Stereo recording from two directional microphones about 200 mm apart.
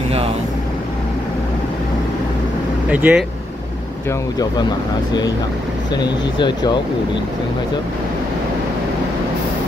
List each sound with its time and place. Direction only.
2.9 s speech: 5° right (ahead or behind)
5.9 s speech: 20° left (ahead or behind)